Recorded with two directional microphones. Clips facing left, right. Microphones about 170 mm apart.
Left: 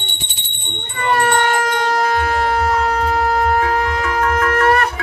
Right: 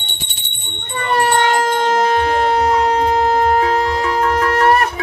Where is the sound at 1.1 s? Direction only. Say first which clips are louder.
Right 1 dB; 25° right (ahead or behind).